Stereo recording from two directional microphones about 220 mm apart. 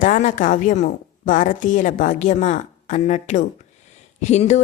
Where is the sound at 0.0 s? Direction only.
35° left (ahead or behind).